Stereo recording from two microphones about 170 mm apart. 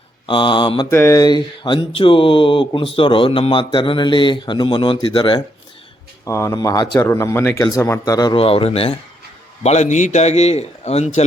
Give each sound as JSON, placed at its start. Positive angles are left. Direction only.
{"t": 0.3, "sound": "speech", "side_deg": 30}
{"t": 0.9, "sound": "speech", "side_deg": 15}
{"t": 6.2, "sound": "speech", "side_deg": 15}
{"t": 8.4, "sound": "a man's voice", "side_deg": 35}